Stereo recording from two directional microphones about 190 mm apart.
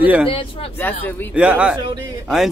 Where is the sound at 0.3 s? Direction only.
30° left (ahead or behind).